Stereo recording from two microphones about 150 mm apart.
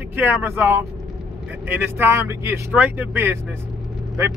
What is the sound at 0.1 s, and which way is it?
Speech, 15° right (ahead or behind).